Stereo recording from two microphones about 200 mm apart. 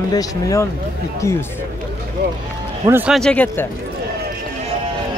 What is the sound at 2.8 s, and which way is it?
Speech, 10° right (ahead or behind).